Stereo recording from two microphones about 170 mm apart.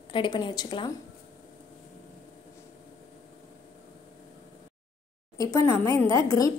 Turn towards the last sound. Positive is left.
turn(degrees=20)  # may be behind; listen again after turning